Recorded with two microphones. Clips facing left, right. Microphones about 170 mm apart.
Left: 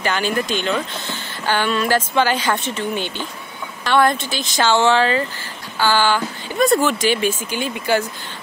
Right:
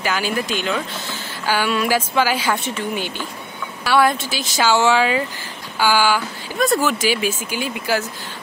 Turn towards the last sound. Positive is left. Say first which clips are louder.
# left 2 dB
turn(degrees=-5)  # may be behind; listen again after turning